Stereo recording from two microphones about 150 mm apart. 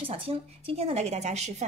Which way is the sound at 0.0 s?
35° right (ahead or behind).